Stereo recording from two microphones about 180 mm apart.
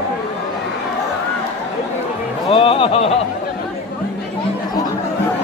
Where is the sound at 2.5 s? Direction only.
30° left (ahead or behind).